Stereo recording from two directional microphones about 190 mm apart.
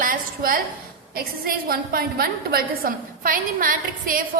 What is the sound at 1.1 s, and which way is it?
A woman's voice, 50° right (ahead or behind).